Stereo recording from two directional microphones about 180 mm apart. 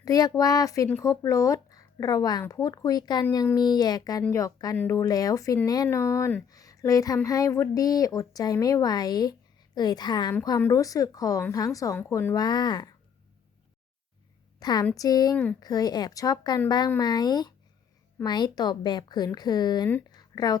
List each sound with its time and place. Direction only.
0.0 s a woman's voice: 20° left (ahead or behind)
14.6 s a woman's voice: 25° left (ahead or behind)
20.1 s a sound: 20° left (ahead or behind)